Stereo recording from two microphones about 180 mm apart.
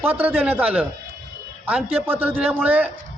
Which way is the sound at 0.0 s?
10° right (ahead or behind).